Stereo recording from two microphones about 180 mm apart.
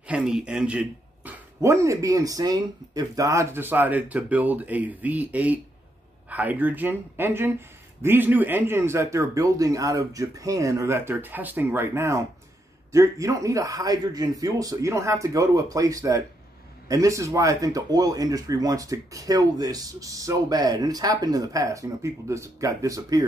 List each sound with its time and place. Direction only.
0.0 s speech: 5° right (ahead or behind)